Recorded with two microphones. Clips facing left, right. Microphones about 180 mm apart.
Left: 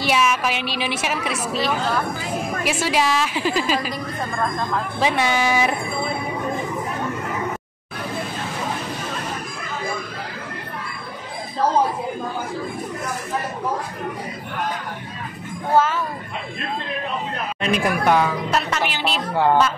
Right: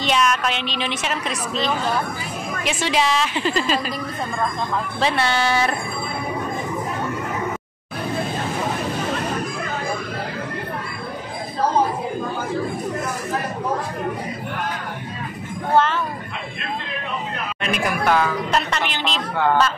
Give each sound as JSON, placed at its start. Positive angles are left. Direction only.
{"t": 0.0, "sound": "a woman's voice", "side_deg": 5}
{"t": 5.0, "sound": "a woman's voice", "side_deg": 15}
{"t": 15.7, "sound": "a sound", "side_deg": 5}
{"t": 17.6, "sound": "speech", "side_deg": 30}
{"t": 18.5, "sound": "a woman's voice", "side_deg": 5}